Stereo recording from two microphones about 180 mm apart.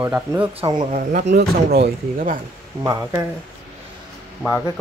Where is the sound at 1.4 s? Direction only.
65° right (ahead or behind).